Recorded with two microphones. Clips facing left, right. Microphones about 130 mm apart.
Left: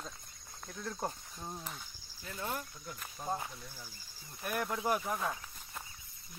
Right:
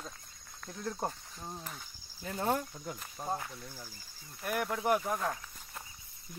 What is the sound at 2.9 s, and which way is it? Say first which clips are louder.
Speech: even; 20° right (ahead or behind).